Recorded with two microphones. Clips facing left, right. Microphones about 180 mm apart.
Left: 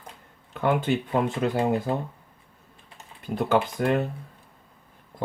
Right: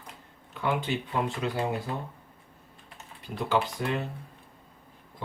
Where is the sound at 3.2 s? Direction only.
50° left (ahead or behind).